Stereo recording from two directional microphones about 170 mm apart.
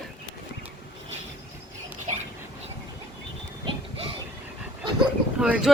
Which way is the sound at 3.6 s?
30° right (ahead or behind).